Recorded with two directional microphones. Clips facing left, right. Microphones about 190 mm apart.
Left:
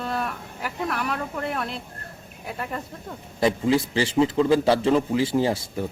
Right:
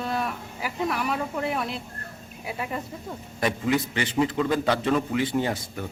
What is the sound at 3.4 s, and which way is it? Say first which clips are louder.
A man's voice: left 4 dB; 25° left (ahead or behind).